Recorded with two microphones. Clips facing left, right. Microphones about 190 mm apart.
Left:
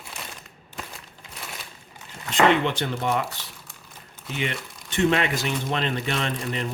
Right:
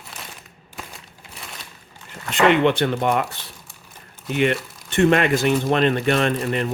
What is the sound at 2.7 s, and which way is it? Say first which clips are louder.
Speech: right 6 dB; 60° right (ahead or behind).